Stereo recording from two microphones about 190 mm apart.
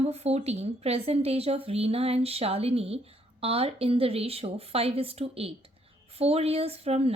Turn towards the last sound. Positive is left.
turn(degrees=-30)  # may be behind; listen again after turning